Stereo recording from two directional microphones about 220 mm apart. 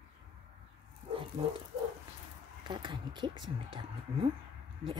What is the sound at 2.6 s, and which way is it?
Speech, 20° right (ahead or behind).